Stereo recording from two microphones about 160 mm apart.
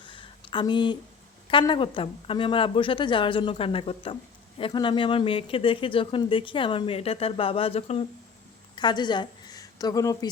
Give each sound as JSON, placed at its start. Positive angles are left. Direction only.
{"t": 0.0, "sound": "a sound", "side_deg": 30}
{"t": 1.5, "sound": "speech", "side_deg": 30}
{"t": 8.7, "sound": "a woman's voice", "side_deg": 30}